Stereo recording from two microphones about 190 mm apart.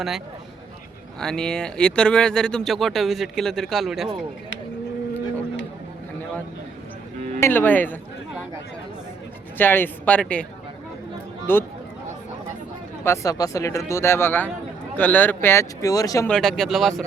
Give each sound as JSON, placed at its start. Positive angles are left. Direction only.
{"t": 1.2, "sound": "speech", "side_deg": 5}
{"t": 7.3, "sound": "speech", "side_deg": 10}
{"t": 9.6, "sound": "speech", "side_deg": 10}
{"t": 11.5, "sound": "speech", "side_deg": 10}
{"t": 13.1, "sound": "speech", "side_deg": 15}
{"t": 16.3, "sound": "speech", "side_deg": 0}